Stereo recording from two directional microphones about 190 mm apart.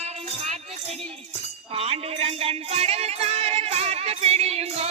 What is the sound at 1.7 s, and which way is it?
Music, 30° right (ahead or behind).